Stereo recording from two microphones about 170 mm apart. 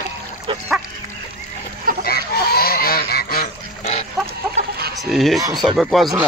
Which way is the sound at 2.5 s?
60° left (ahead or behind).